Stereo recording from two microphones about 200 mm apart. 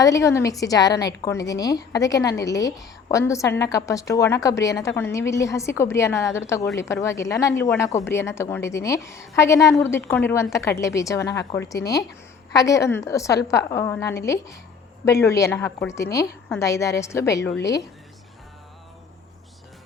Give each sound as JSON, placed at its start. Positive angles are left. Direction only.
{"t": 0.0, "sound": "a woman's voice", "side_deg": 15}